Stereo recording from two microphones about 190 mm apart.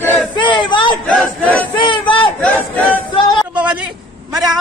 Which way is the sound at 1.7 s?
25° left (ahead or behind).